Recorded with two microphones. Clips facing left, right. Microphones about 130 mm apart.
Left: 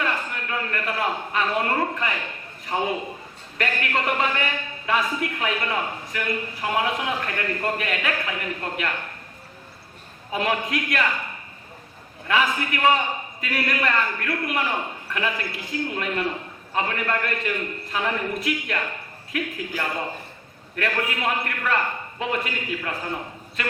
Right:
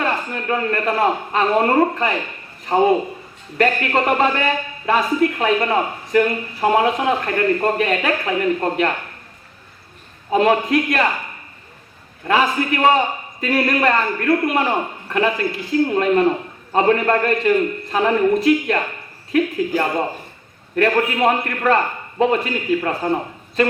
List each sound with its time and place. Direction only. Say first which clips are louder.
0.0 s a man's voice: right 5 dB; 35° right (ahead or behind)
10.3 s a man's voice: right 9 dB; 35° right (ahead or behind)
12.3 s a man's voice: right 6 dB; 35° right (ahead or behind)